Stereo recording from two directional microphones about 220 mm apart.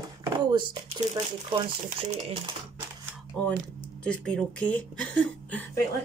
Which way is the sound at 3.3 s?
5° left (ahead or behind).